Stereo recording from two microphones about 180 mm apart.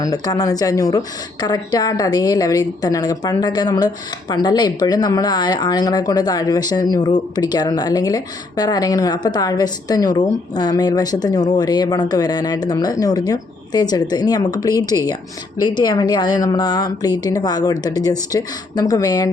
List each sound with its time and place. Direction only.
0.0 s speech: 20° left (ahead or behind)